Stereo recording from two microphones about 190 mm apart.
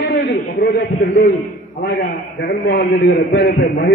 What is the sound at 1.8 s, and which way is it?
A man's voice, 60° left (ahead or behind).